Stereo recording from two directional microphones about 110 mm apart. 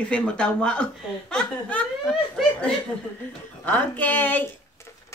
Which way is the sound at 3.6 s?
15° left (ahead or behind).